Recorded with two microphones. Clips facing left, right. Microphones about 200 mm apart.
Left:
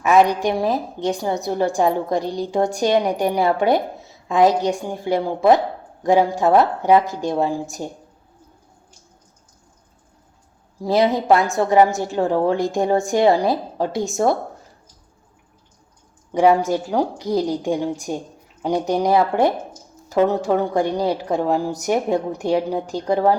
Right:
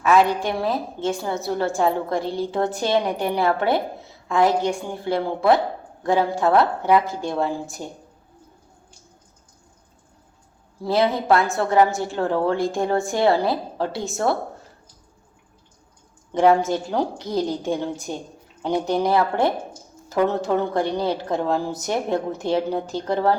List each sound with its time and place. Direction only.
0.0 s a woman's voice: 15° left (ahead or behind)
10.8 s a woman's voice: 15° left (ahead or behind)
16.3 s a woman's voice: 10° left (ahead or behind)